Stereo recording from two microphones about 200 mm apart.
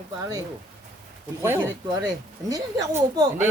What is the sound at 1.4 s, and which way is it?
A woman's voice, 15° right (ahead or behind).